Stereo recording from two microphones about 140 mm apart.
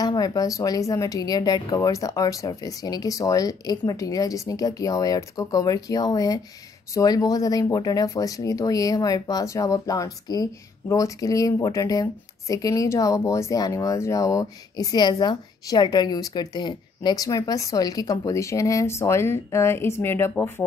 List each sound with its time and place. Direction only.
0.0 s speech: 30° left (ahead or behind)